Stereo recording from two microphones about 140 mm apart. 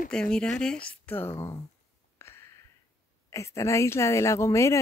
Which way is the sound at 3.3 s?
20° left (ahead or behind).